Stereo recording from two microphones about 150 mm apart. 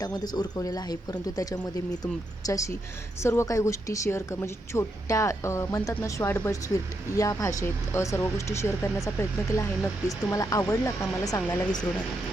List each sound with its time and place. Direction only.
0.0 s speech: 25° left (ahead or behind)